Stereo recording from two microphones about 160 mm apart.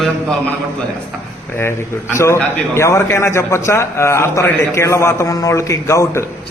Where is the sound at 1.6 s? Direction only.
15° left (ahead or behind).